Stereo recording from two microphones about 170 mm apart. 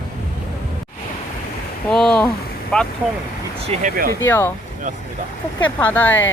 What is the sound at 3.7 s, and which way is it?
Speech, 45° right (ahead or behind).